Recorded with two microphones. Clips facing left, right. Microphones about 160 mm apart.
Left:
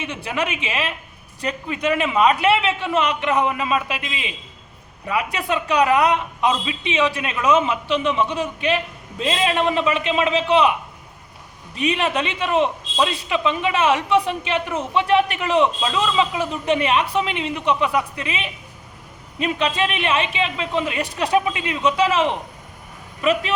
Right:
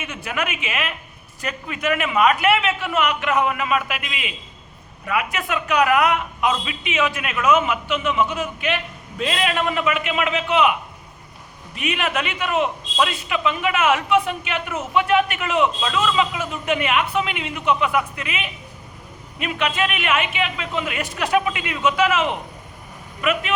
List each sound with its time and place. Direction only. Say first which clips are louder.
0.0 s a man's voice: left 2 dB; 30° left (ahead or behind)